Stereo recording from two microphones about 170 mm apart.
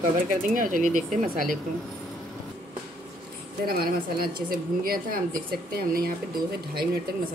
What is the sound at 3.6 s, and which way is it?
A woman's voice, 60° right (ahead or behind).